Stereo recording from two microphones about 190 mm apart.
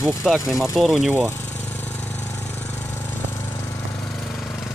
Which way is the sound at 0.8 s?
5° right (ahead or behind).